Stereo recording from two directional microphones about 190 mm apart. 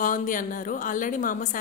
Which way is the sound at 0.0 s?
45° left (ahead or behind).